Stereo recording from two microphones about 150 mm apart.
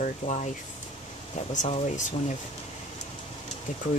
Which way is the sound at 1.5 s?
55° left (ahead or behind).